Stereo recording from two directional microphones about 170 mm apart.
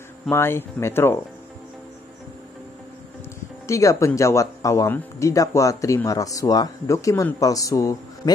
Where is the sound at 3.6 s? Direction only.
15° left (ahead or behind).